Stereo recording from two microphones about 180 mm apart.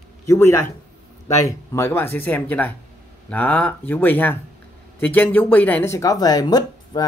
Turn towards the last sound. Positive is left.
turn(degrees=20)  # may be behind; listen again after turning